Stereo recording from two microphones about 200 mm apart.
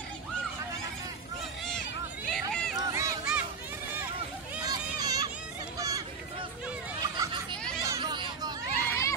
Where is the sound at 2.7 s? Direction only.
15° right (ahead or behind).